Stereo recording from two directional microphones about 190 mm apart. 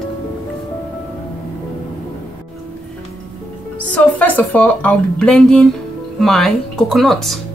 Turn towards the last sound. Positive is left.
turn(degrees=0)  # may be behind; listen again after turning